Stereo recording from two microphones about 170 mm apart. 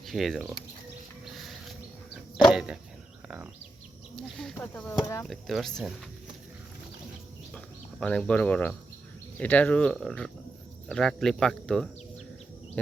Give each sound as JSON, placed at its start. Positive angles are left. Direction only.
{"t": 0.0, "sound": "speech", "side_deg": 0}
{"t": 1.2, "sound": "a sound", "side_deg": 0}
{"t": 4.2, "sound": "speech", "side_deg": 0}
{"t": 4.7, "sound": "speech", "side_deg": 10}
{"t": 5.2, "sound": "speech", "side_deg": 0}
{"t": 7.5, "sound": "bird", "side_deg": 5}
{"t": 9.4, "sound": "speech", "side_deg": 10}